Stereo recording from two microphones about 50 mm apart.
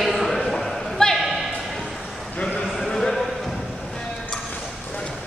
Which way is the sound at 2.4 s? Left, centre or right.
Centre.